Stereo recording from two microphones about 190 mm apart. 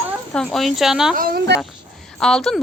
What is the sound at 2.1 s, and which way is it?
Speech, 5° left (ahead or behind).